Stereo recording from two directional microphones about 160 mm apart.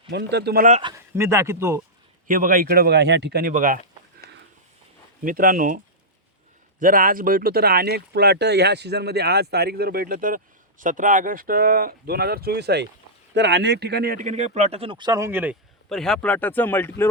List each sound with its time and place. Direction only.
0.1 s speech: 90° right
1.1 s a man's voice: 15° right (ahead or behind)
2.2 s speech: 60° right (ahead or behind); by 3.5 s 85° right
3.5 s speech: 60° right (ahead or behind)
5.2 s speech: 60° right (ahead or behind)
14.3 s speech: 45° right (ahead or behind); by 15.5 s 10° right (ahead or behind)
15.9 s speech: 5° left (ahead or behind)